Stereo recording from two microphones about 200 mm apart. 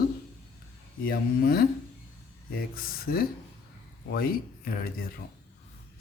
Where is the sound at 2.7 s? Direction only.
50° left (ahead or behind).